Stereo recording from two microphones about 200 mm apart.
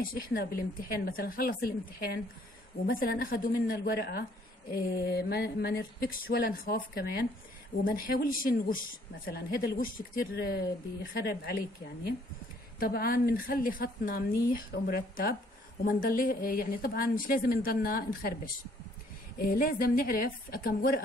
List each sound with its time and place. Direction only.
0.0 s speech: 45° left (ahead or behind)
12.7 s speech: 50° left (ahead or behind)